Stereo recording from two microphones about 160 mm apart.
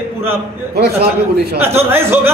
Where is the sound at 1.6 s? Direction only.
15° right (ahead or behind).